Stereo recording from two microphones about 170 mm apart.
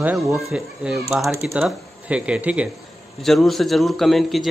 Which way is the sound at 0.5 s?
5° right (ahead or behind).